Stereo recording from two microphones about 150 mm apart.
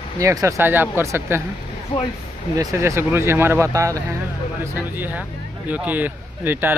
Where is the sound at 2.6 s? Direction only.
20° right (ahead or behind).